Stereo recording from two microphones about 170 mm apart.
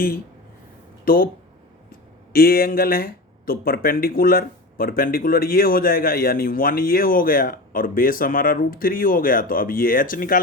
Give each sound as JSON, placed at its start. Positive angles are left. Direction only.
{"t": 1.0, "sound": "speech", "side_deg": 60}